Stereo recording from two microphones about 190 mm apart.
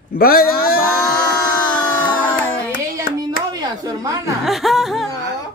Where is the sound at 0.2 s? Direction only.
50° left (ahead or behind).